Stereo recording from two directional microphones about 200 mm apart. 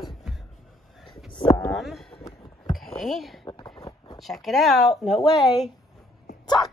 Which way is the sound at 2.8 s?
Centre (ahead or behind).